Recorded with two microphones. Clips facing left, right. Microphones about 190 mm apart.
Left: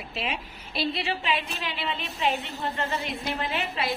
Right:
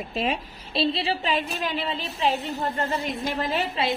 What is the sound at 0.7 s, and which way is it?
A woman's voice, 30° right (ahead or behind).